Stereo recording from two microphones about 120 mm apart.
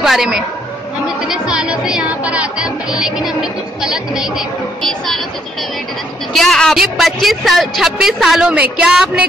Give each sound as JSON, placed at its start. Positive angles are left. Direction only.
{"t": 0.0, "sound": "a woman's voice", "side_deg": -5}
{"t": 6.3, "sound": "a man's voice", "side_deg": 5}